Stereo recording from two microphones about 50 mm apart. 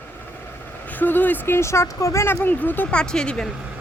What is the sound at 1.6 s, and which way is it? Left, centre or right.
Speech, left.